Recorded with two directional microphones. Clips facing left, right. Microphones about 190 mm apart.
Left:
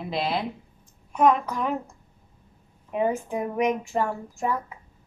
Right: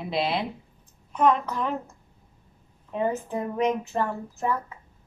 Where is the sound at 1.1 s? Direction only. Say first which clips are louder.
Left 1 dB; 10° left (ahead or behind).